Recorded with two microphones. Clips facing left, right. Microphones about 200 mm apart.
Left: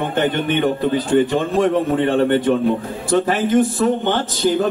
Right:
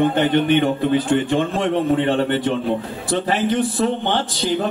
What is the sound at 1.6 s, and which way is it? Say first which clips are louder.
A man's voice: left 1 dB; 45° left (ahead or behind).